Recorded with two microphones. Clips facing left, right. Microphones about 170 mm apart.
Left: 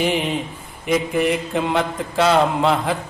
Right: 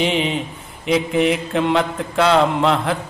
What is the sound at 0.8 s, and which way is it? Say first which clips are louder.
Mantra: right 2 dB; 70° right (ahead or behind).